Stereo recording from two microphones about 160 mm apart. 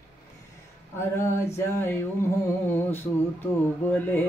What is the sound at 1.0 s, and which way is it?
Female singing, 15° left (ahead or behind).